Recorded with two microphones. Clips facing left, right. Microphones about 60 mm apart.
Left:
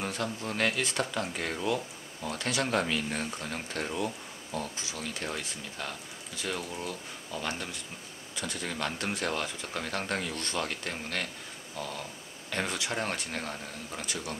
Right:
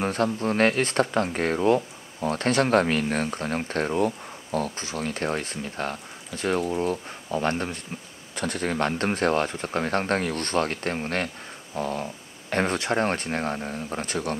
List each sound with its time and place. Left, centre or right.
0.0 s speech: right